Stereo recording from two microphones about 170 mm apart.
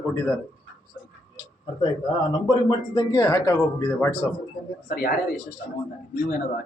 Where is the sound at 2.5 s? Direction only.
25° left (ahead or behind).